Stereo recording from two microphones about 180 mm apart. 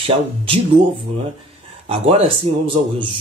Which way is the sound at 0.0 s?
30° right (ahead or behind).